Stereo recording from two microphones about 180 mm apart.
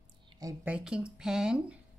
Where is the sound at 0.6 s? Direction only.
5° right (ahead or behind).